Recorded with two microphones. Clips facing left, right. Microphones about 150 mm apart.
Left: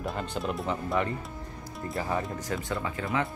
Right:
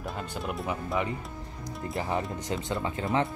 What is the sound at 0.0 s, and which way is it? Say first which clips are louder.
Music: left 3 dB; 5° right (ahead or behind).